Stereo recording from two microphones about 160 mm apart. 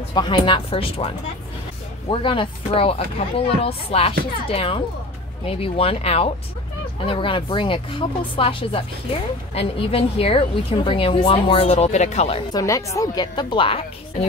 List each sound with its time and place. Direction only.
0.1 s a woman's voice: 30° left (ahead or behind)
12.5 s speech: 20° left (ahead or behind)